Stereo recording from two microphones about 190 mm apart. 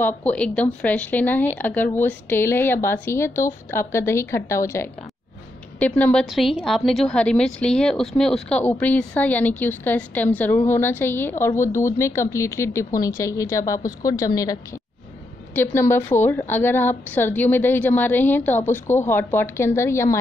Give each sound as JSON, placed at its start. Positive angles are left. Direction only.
{"t": 0.0, "sound": "a woman's voice", "side_deg": 10}